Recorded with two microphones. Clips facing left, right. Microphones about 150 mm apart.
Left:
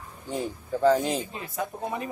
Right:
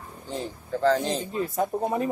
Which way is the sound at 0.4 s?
10° left (ahead or behind).